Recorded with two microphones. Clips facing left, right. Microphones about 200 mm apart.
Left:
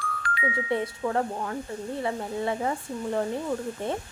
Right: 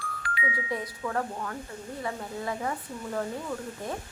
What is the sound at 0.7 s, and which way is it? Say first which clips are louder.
Speech: left 6 dB; 30° left (ahead or behind).